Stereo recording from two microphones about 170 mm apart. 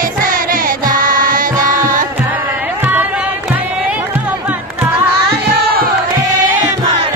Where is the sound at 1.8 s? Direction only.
50° right (ahead or behind).